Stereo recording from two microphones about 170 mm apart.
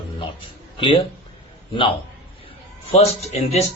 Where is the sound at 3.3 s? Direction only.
40° left (ahead or behind).